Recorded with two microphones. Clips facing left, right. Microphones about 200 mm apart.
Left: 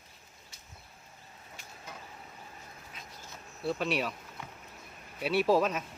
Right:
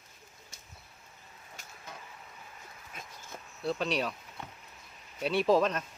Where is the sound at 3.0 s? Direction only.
50° right (ahead or behind).